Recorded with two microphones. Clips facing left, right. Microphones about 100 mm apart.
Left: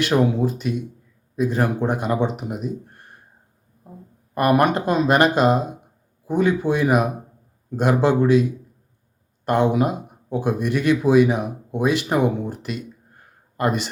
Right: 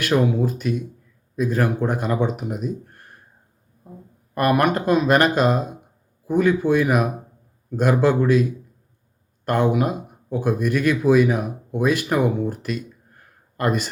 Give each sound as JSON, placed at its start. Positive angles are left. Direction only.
{"t": 0.1, "sound": "speech", "side_deg": 15}
{"t": 4.4, "sound": "speech", "side_deg": 20}